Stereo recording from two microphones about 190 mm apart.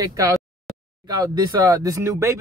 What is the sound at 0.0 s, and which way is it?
Speech, 15° right (ahead or behind).